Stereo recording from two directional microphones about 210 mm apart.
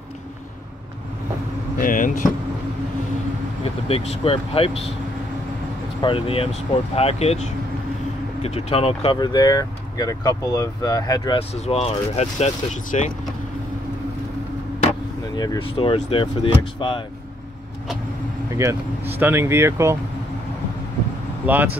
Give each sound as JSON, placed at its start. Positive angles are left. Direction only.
{"t": 1.8, "sound": "speech", "side_deg": 40}
{"t": 3.6, "sound": "speech", "side_deg": 30}
{"t": 5.9, "sound": "speech", "side_deg": 25}
{"t": 11.6, "sound": "speech", "side_deg": 30}
{"t": 15.3, "sound": "speech", "side_deg": 20}
{"t": 18.5, "sound": "speech", "side_deg": -15}
{"t": 21.5, "sound": "speech", "side_deg": -10}